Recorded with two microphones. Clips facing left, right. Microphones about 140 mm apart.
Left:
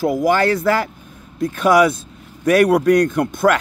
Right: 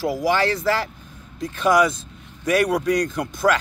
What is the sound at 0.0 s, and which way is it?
Speech, 50° left (ahead or behind).